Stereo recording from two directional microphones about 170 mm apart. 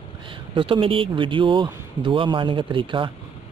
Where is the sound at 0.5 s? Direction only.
30° right (ahead or behind).